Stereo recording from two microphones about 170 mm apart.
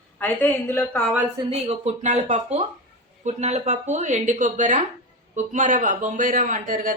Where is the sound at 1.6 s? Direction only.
40° right (ahead or behind).